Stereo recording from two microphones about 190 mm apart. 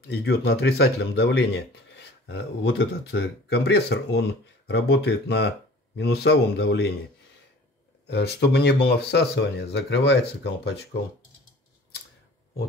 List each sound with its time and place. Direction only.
0.1 s speech: 60° left (ahead or behind)
2.3 s speech: 75° left (ahead or behind)
8.1 s speech: 60° left (ahead or behind)